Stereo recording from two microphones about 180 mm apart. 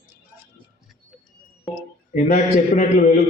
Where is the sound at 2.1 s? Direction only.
45° left (ahead or behind).